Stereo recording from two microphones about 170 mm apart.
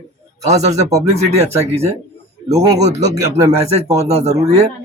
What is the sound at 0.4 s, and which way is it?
Speech, 40° right (ahead or behind).